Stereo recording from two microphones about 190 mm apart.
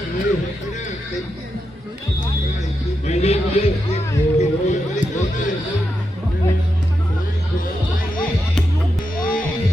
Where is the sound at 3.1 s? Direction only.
35° left (ahead or behind).